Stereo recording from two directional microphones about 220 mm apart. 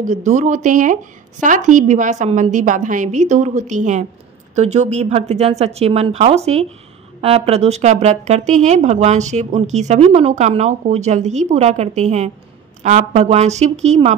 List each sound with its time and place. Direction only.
0.0 s speech: 30° right (ahead or behind)